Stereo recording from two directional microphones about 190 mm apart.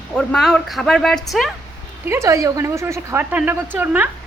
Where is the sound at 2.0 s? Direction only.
15° right (ahead or behind).